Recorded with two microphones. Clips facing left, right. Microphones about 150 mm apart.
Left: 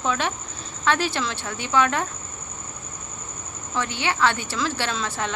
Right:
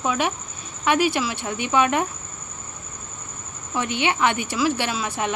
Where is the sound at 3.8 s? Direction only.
20° right (ahead or behind).